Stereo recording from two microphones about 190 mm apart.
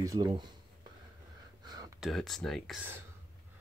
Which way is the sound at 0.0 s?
20° right (ahead or behind).